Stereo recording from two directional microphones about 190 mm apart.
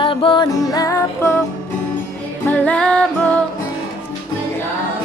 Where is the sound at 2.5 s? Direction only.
5° left (ahead or behind).